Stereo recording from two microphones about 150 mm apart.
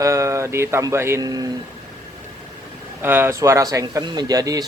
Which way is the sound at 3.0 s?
15° right (ahead or behind).